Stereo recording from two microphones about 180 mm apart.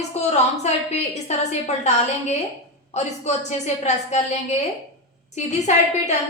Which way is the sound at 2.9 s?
40° left (ahead or behind).